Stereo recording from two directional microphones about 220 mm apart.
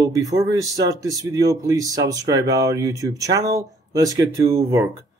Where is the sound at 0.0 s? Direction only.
15° right (ahead or behind).